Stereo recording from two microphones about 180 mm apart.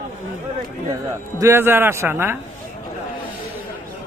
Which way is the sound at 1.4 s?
15° right (ahead or behind).